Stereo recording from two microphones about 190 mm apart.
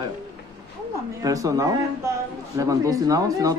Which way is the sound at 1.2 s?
20° right (ahead or behind).